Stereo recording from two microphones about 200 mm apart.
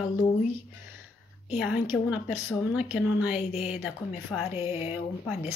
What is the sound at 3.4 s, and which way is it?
Speech, 30° left (ahead or behind).